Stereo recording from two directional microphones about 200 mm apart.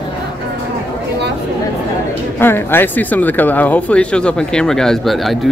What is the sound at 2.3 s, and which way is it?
Speech, 10° left (ahead or behind).